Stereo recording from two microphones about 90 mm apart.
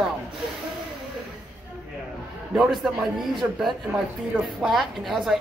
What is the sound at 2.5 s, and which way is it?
A woman's voice, 5° right (ahead or behind).